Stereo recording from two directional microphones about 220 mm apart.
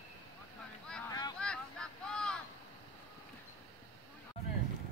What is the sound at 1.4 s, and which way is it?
Vehicle, 5° left (ahead or behind).